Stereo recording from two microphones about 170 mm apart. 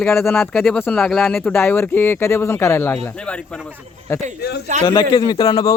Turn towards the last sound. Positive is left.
turn(degrees=25)  # may be behind; listen again after turning